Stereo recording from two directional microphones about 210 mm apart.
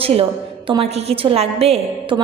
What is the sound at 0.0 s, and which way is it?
A woman's voice, 25° right (ahead or behind).